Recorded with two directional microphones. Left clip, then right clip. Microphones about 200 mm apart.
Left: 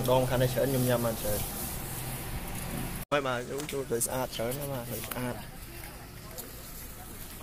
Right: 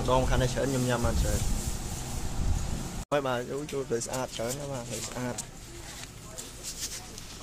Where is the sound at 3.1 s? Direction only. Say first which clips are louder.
Right 1 dB; 20° right (ahead or behind).